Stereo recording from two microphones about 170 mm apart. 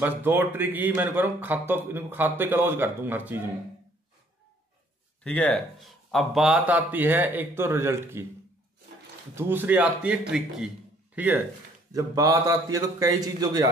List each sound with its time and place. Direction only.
0.0 s speech: 10° right (ahead or behind)
5.2 s speech: 10° left (ahead or behind); by 8.3 s 15° right (ahead or behind)
9.3 s speech: 10° right (ahead or behind)
11.9 s a man's voice: 20° right (ahead or behind)